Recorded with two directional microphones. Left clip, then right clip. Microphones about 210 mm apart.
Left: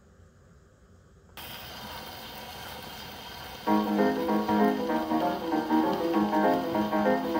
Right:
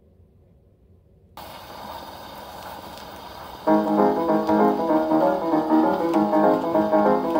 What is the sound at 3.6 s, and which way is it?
Music, 35° right (ahead or behind).